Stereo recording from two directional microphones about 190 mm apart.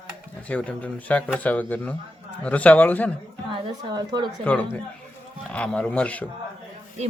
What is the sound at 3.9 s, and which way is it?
Speech, 20° right (ahead or behind).